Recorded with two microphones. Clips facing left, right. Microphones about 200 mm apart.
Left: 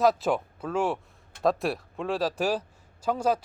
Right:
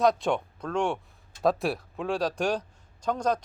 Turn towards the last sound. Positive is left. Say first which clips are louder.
# left 1 dB
turn(degrees=5)  # may be behind; listen again after turning